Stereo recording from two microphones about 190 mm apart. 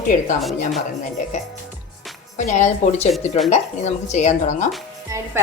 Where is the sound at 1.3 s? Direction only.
40° left (ahead or behind).